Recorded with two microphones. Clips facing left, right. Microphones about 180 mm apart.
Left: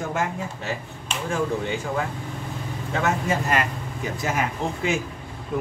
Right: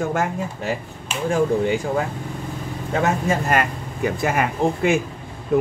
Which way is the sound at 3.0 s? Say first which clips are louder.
Right 3 dB; 50° right (ahead or behind).